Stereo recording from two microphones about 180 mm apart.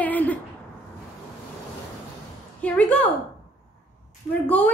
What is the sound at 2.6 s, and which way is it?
Speech, 5° left (ahead or behind).